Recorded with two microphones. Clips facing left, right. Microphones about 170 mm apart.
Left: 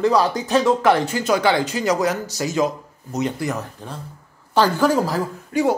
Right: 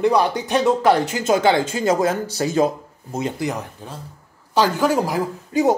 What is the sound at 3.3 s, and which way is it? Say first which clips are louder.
A woman's voice: even; 20° right (ahead or behind).